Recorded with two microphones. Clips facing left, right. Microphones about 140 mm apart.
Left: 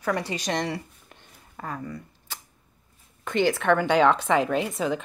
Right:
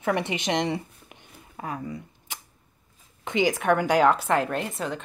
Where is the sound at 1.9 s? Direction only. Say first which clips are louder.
Right 1 dB; 20° right (ahead or behind).